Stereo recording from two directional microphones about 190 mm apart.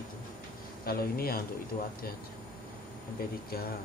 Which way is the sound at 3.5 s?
55° left (ahead or behind).